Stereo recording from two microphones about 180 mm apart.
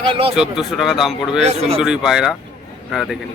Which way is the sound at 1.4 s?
35° right (ahead or behind).